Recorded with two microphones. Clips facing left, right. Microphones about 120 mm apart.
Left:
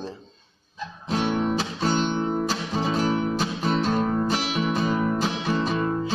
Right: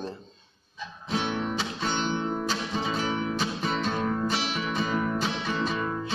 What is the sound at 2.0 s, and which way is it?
Guitar, 40° left (ahead or behind).